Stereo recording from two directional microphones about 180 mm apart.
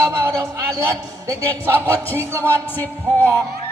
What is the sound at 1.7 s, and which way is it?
Music, 15° right (ahead or behind).